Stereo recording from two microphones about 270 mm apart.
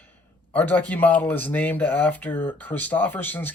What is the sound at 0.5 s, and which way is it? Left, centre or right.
Speech, centre.